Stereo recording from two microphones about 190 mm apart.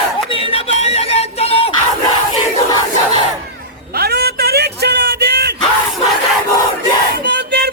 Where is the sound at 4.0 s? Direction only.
55° right (ahead or behind).